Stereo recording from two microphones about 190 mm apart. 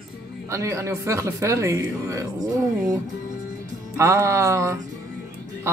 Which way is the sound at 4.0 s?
15° right (ahead or behind).